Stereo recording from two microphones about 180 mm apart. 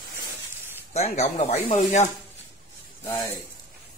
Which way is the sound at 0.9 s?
35° left (ahead or behind).